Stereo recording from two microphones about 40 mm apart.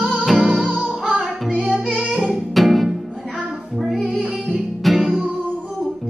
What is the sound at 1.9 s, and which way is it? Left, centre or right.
Music, right.